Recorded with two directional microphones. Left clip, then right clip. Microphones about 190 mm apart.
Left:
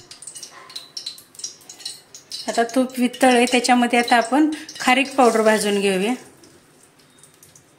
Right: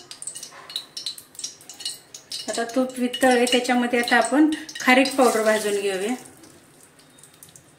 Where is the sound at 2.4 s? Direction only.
55° left (ahead or behind).